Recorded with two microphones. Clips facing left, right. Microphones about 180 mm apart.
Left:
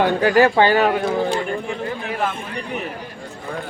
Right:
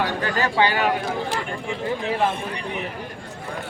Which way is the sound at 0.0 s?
50° left (ahead or behind).